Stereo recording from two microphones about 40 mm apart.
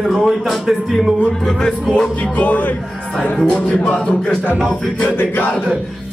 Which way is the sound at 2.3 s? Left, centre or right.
Left.